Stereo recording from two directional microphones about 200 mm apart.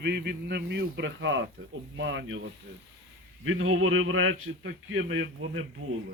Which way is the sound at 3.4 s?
85° right.